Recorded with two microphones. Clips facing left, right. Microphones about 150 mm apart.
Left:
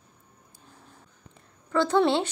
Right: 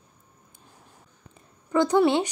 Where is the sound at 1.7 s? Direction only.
15° right (ahead or behind).